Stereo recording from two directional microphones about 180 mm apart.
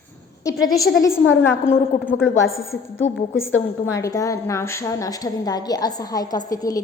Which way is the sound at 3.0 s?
90° left.